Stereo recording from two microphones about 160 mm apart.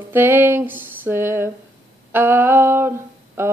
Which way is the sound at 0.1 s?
15° right (ahead or behind).